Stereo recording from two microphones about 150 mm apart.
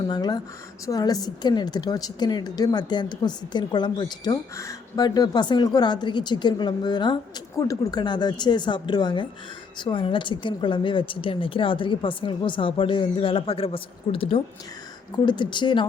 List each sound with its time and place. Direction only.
0.1 s a woman's voice: 30° left (ahead or behind)